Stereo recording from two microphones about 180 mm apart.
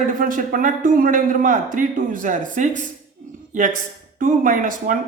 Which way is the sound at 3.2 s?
45° right (ahead or behind).